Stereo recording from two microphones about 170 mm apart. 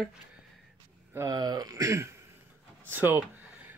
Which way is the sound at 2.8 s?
10° right (ahead or behind).